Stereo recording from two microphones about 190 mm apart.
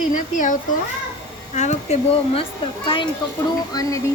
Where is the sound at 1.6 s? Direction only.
35° left (ahead or behind).